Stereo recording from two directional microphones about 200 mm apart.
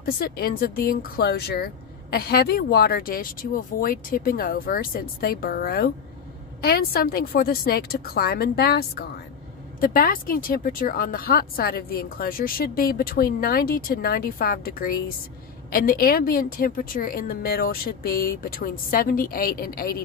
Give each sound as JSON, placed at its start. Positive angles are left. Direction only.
{"t": 0.0, "sound": "speech", "side_deg": 50}